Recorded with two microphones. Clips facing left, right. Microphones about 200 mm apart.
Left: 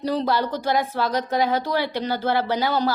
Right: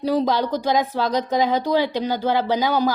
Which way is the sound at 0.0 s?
10° right (ahead or behind).